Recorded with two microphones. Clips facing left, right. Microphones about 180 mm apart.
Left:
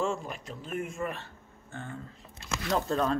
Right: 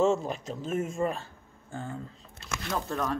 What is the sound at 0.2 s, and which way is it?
Speech, 35° right (ahead or behind).